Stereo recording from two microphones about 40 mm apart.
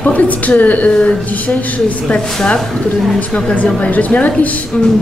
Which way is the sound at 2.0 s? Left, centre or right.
Left.